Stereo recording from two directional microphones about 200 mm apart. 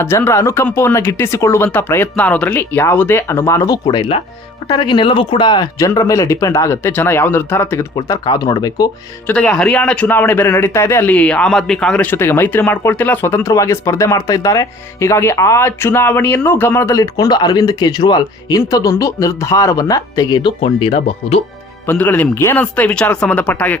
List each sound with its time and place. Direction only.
0.0 s speech: 10° left (ahead or behind)
9.3 s speech: 5° left (ahead or behind); by 21.4 s 30° left (ahead or behind)
21.8 s speech: 10° left (ahead or behind)